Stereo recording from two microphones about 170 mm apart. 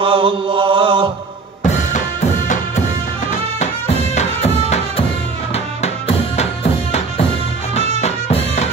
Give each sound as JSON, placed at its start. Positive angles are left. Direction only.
{"t": 0.0, "sound": "chant", "side_deg": -30}
{"t": 1.7, "sound": "music", "side_deg": 45}
{"t": 4.1, "sound": "music", "side_deg": 40}
{"t": 8.0, "sound": "music", "side_deg": 40}